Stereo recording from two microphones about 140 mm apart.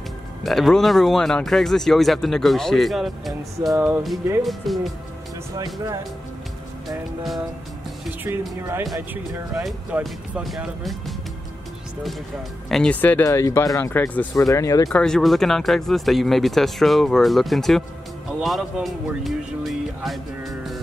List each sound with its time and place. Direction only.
0.4 s speech: centre (ahead or behind)
3.7 s speech: 15° right (ahead or behind)
4.4 s speech: centre (ahead or behind)
8.2 s speech: 15° right (ahead or behind)
9.1 s speech: 5° right (ahead or behind)
12.6 s speech: 5° left (ahead or behind)
14.4 s speech: 25° left (ahead or behind)
14.9 s speech: 5° left (ahead or behind)